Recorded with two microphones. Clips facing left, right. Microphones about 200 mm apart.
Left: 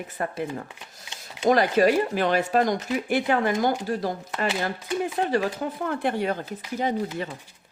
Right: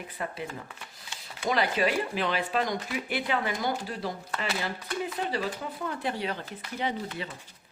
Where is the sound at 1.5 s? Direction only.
45° left (ahead or behind).